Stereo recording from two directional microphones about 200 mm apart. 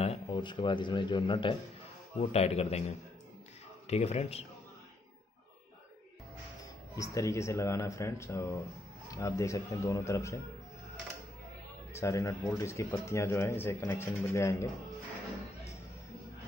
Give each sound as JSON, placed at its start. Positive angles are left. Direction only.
{"t": 0.0, "sound": "speech", "side_deg": 25}
{"t": 3.9, "sound": "speech", "side_deg": 30}
{"t": 7.0, "sound": "speech", "side_deg": 15}
{"t": 11.9, "sound": "speech", "side_deg": 15}